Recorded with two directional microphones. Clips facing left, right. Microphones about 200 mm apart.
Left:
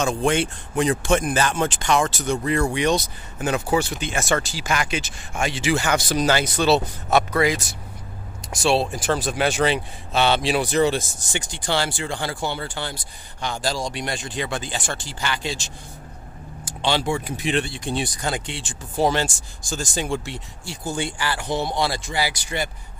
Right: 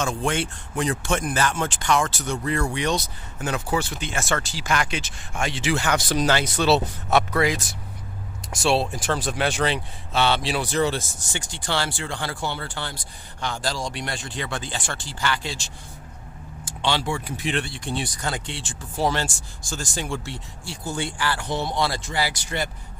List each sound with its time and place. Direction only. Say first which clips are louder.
0.0 s speech: left 4 dB; 20° left (ahead or behind); by 7.6 s centre (ahead or behind)
8.6 s speech: left 2 dB; centre (ahead or behind); by 15.7 s 20° left (ahead or behind)
16.8 s speech: left 3 dB; 20° left (ahead or behind)